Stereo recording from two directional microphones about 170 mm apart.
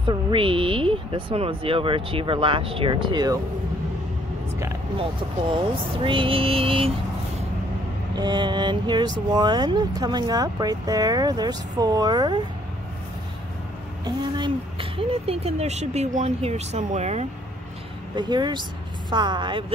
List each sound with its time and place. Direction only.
0.0 s speech: 30° right (ahead or behind)
6.0 s speech: 30° right (ahead or behind)
8.2 s speech: 25° right (ahead or behind)
14.0 s speech: 25° right (ahead or behind)
18.1 s speech: 25° right (ahead or behind)